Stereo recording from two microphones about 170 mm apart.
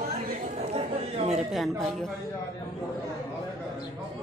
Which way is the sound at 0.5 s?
40° right (ahead or behind).